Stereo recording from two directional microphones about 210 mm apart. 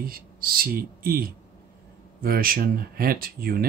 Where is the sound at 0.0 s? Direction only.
45° right (ahead or behind).